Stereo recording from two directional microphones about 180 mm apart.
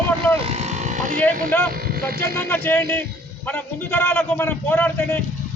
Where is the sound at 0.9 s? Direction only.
45° right (ahead or behind).